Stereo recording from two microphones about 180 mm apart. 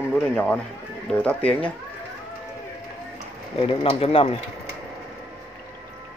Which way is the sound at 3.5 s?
30° left (ahead or behind).